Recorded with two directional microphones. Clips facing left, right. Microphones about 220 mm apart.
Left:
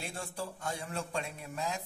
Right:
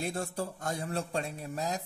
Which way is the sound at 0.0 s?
40° right (ahead or behind).